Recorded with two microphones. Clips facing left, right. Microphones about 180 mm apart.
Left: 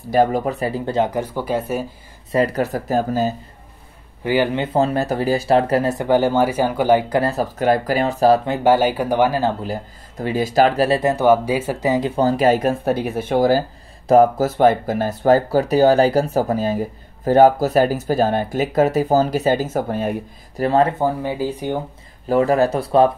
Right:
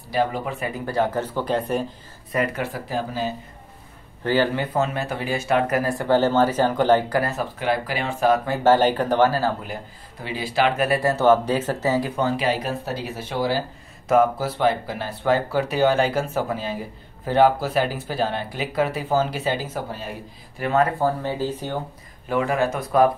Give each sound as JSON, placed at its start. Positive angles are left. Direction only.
{"t": 0.1, "sound": "speech", "side_deg": 45}
{"t": 2.3, "sound": "speech", "side_deg": 35}
{"t": 4.2, "sound": "speech", "side_deg": 15}
{"t": 4.7, "sound": "speech", "side_deg": 35}
{"t": 7.1, "sound": "speech", "side_deg": 30}
{"t": 8.5, "sound": "speech", "side_deg": 10}
{"t": 9.6, "sound": "speech", "side_deg": 40}
{"t": 10.9, "sound": "speech", "side_deg": 20}
{"t": 12.2, "sound": "speech", "side_deg": 40}
{"t": 20.6, "sound": "speech", "side_deg": 30}
{"t": 21.0, "sound": "speech", "side_deg": 15}
{"t": 22.3, "sound": "speech", "side_deg": 35}